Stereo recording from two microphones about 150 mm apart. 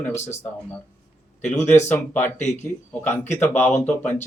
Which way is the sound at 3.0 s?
15° left (ahead or behind).